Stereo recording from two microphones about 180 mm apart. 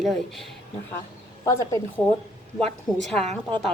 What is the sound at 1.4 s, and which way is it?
Speech, 15° left (ahead or behind).